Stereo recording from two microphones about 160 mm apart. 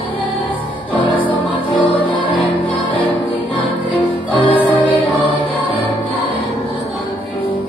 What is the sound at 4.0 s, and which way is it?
Music, 35° left (ahead or behind).